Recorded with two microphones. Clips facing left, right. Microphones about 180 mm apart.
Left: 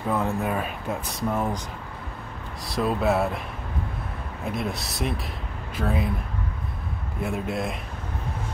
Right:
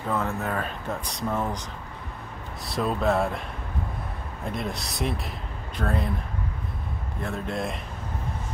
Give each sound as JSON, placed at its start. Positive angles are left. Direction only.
{"t": 0.1, "sound": "speech", "side_deg": 15}
{"t": 2.7, "sound": "speech", "side_deg": 5}
{"t": 4.5, "sound": "speech", "side_deg": 0}
{"t": 7.2, "sound": "speech", "side_deg": 10}